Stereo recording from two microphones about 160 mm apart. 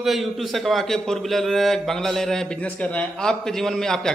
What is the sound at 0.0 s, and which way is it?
A man's voice, centre (ahead or behind).